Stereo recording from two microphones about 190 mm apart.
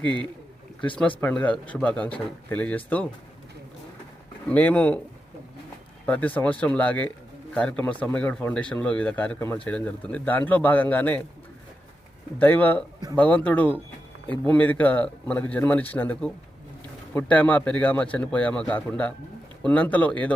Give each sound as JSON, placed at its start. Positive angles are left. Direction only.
{"t": 0.9, "sound": "speech", "side_deg": 5}
{"t": 4.4, "sound": "speech", "side_deg": 5}
{"t": 6.1, "sound": "speech", "side_deg": 10}
{"t": 12.4, "sound": "speech", "side_deg": 10}